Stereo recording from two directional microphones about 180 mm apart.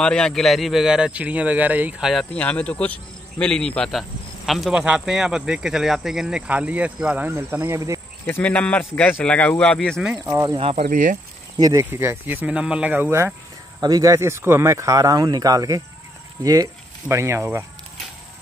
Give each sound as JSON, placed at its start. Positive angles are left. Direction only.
{"t": 0.0, "sound": "speech", "side_deg": 5}
{"t": 8.3, "sound": "a man's voice", "side_deg": 10}
{"t": 10.2, "sound": "speech", "side_deg": -15}
{"t": 10.6, "sound": "speech", "side_deg": -35}
{"t": 10.9, "sound": "speech", "side_deg": -50}
{"t": 11.5, "sound": "speech", "side_deg": -20}